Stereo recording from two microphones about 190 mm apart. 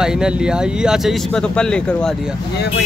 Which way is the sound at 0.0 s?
5° right (ahead or behind).